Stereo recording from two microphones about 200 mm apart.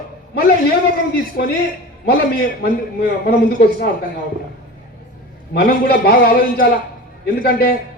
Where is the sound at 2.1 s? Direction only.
50° left (ahead or behind).